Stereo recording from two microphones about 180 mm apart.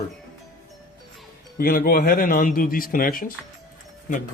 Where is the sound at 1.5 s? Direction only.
55° left (ahead or behind).